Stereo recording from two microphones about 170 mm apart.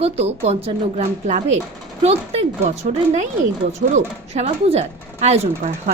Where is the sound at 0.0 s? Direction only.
40° right (ahead or behind).